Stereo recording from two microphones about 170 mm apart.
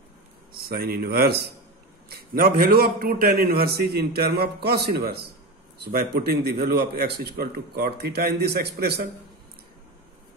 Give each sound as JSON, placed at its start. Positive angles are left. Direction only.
{"t": 0.6, "sound": "a man's voice", "side_deg": -65}